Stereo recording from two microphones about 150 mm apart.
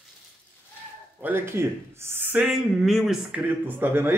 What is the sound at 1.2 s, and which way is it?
Speech, 15° right (ahead or behind).